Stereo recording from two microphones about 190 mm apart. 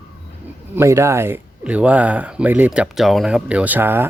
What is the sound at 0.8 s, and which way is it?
Speech, 15° right (ahead or behind).